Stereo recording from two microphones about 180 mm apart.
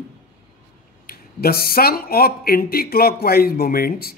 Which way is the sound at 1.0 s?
55° left (ahead or behind).